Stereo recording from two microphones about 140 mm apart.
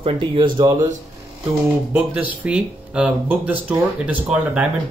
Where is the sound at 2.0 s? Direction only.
10° right (ahead or behind).